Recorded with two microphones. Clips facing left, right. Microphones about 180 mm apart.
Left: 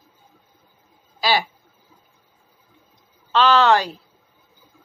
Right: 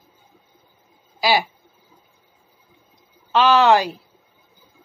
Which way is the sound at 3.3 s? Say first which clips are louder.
Right 1 dB; 10° right (ahead or behind).